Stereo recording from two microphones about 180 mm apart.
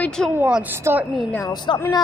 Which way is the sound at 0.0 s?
5° left (ahead or behind).